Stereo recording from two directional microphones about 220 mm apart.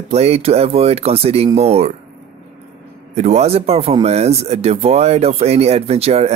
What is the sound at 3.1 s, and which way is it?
Speech, 30° right (ahead or behind).